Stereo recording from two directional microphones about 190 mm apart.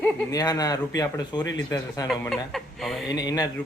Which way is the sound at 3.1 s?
20° left (ahead or behind).